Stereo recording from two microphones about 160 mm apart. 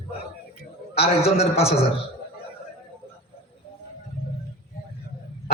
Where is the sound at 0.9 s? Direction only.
40° left (ahead or behind).